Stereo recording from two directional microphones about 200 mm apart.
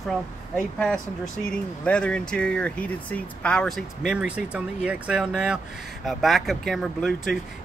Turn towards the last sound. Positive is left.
turn(degrees=0)  # may be behind; listen again after turning